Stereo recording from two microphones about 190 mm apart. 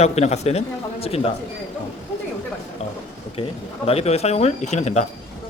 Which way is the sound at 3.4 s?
30° left (ahead or behind).